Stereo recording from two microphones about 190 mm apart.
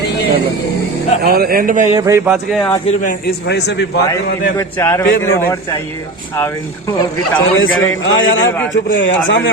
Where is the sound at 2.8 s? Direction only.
40° left (ahead or behind).